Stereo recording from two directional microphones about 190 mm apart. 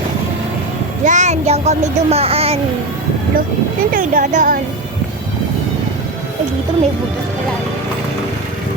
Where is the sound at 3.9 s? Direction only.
45° right (ahead or behind).